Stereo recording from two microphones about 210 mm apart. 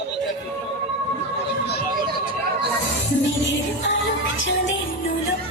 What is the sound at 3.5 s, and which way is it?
Music, 60° left (ahead or behind).